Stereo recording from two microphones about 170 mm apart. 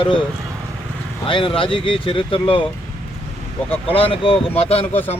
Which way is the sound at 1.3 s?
30° left (ahead or behind).